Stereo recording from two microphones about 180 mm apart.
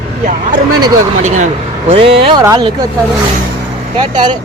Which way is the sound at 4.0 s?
25° right (ahead or behind).